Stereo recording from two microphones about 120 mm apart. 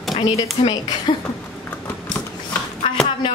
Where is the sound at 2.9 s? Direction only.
45° left (ahead or behind).